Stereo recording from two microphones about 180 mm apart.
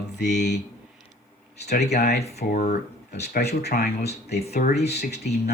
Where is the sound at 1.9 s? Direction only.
60° left (ahead or behind).